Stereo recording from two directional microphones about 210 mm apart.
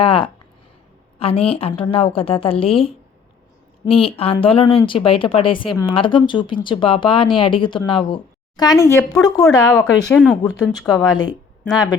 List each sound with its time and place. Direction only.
0.0 s speech: 25° left (ahead or behind)
10.1 s speech: centre (ahead or behind)
10.4 s speech: 20° left (ahead or behind)